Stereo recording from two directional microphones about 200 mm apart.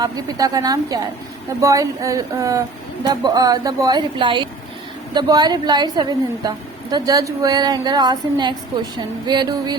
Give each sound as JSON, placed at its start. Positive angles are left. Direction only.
{"t": 0.0, "sound": "a woman's voice", "side_deg": -20}